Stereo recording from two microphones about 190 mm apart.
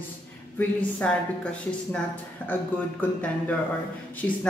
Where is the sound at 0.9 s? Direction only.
5° left (ahead or behind).